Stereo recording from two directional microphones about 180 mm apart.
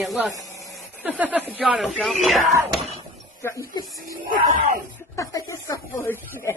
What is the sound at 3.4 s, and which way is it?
Speech, 15° left (ahead or behind).